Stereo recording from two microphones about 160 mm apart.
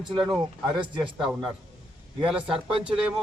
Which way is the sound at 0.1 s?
30° right (ahead or behind).